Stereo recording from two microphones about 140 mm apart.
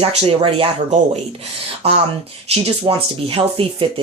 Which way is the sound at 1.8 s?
50° right (ahead or behind).